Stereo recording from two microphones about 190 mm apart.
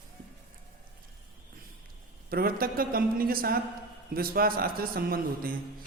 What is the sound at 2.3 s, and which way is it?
A man's voice, 50° right (ahead or behind).